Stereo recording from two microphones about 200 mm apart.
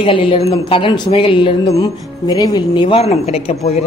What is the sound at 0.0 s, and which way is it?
Speech, 25° left (ahead or behind).